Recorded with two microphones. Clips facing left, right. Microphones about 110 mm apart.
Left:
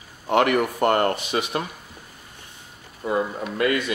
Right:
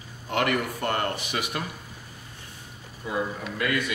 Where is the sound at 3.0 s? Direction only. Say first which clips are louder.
Left 7 dB; 45° left (ahead or behind).